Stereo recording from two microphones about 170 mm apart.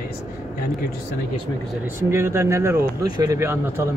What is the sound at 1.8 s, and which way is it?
Speech, 15° right (ahead or behind).